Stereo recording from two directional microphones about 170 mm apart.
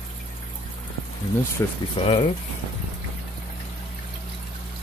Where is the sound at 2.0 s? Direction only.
35° left (ahead or behind).